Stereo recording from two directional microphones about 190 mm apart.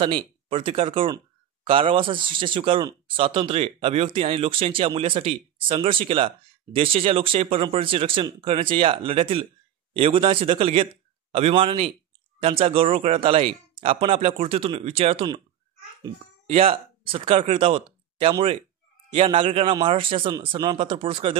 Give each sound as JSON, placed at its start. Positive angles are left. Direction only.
{"t": 0.0, "sound": "speech", "side_deg": -30}
{"t": 16.4, "sound": "speech", "side_deg": -30}